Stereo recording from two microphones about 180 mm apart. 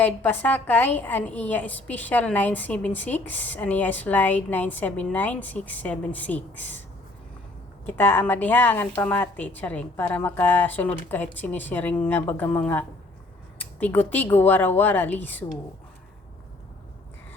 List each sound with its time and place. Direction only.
0.0 s a woman's voice: 10° left (ahead or behind)
7.9 s a woman's voice: 10° left (ahead or behind)